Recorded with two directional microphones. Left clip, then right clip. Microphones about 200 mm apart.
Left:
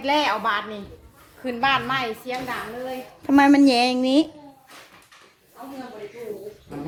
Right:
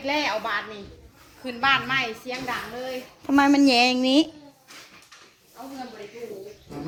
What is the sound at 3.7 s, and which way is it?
Speech, centre (ahead or behind).